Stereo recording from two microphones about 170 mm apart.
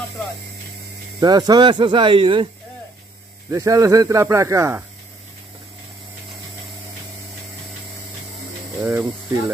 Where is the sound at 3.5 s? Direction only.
20° right (ahead or behind).